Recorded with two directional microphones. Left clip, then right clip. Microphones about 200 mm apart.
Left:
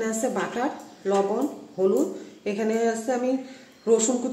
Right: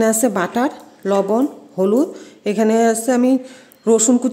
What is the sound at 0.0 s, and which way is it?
A woman's voice, 60° right (ahead or behind).